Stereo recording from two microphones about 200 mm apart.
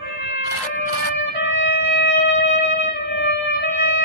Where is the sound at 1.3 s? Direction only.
65° left (ahead or behind).